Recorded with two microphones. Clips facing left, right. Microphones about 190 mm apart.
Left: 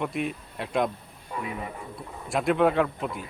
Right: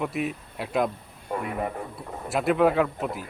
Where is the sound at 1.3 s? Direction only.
55° right (ahead or behind).